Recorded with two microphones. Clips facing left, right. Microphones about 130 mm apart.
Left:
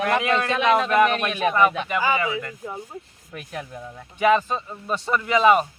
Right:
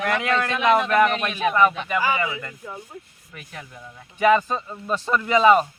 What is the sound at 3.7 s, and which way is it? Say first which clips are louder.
Speech: left 5 dB; 30° left (ahead or behind).